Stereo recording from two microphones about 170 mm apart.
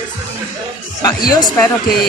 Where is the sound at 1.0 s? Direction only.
20° left (ahead or behind).